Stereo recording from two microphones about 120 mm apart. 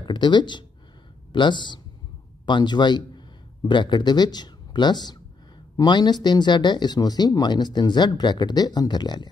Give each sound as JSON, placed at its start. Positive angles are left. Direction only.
{"t": 0.0, "sound": "speech", "side_deg": 40}